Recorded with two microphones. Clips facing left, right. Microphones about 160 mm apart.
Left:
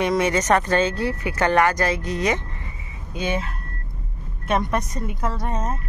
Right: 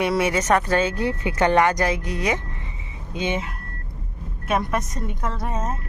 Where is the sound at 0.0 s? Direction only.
10° right (ahead or behind).